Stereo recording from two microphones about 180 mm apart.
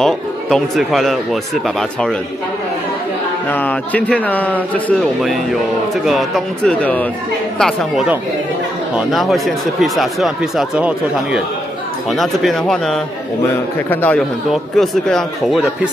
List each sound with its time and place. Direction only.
0.0 s speech: centre (ahead or behind)
3.4 s a man's voice: 10° left (ahead or behind)